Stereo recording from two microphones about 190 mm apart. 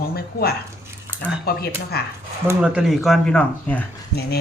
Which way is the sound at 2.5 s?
5° right (ahead or behind).